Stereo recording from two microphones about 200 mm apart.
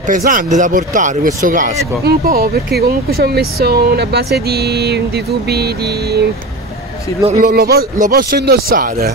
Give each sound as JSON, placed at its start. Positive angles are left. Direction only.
{"t": 0.0, "sound": "speech", "side_deg": -40}
{"t": 7.2, "sound": "speech", "side_deg": -45}